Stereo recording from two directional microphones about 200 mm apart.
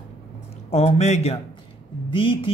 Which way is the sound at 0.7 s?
30° left (ahead or behind).